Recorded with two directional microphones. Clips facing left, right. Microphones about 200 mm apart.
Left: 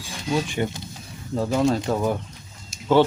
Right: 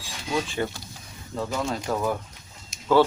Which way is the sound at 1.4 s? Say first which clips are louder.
Left 7 dB; 30° left (ahead or behind).